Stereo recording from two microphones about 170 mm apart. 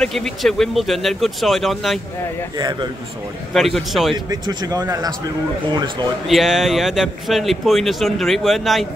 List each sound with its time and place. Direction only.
0.0 s speech: centre (ahead or behind)
2.5 s speech: 25° right (ahead or behind)
3.5 s speech: centre (ahead or behind)
4.3 s speech: 20° right (ahead or behind)
6.2 s speech: centre (ahead or behind)